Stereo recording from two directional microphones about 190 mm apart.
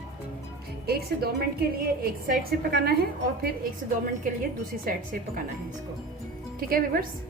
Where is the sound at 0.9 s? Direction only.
55° right (ahead or behind).